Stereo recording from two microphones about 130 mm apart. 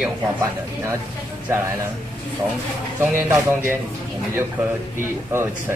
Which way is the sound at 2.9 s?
15° right (ahead or behind).